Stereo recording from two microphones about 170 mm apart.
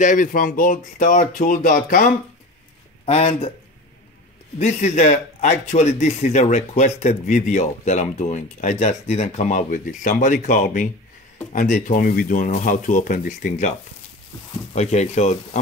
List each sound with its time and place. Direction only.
0.0 s a man's voice: 50° left (ahead or behind)
3.1 s speech: 35° left (ahead or behind)
4.6 s a man's voice: 45° left (ahead or behind)